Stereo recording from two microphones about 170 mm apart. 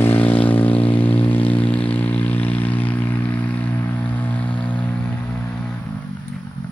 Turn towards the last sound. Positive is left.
turn(degrees=5)  # may be behind; listen again after turning